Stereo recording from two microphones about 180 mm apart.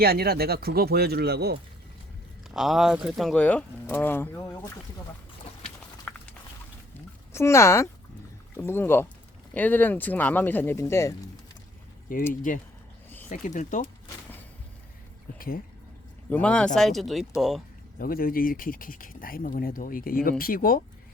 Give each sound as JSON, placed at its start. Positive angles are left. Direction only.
{"t": 0.0, "sound": "speech", "side_deg": -60}
{"t": 2.5, "sound": "speech", "side_deg": 0}
{"t": 6.1, "sound": "walk", "side_deg": 5}
{"t": 6.9, "sound": "a sound", "side_deg": 15}
{"t": 8.5, "sound": "speech", "side_deg": 15}
{"t": 12.3, "sound": "speech", "side_deg": 45}
{"t": 15.4, "sound": "speech", "side_deg": 55}
{"t": 16.3, "sound": "speech", "side_deg": 5}
{"t": 18.0, "sound": "speech", "side_deg": 55}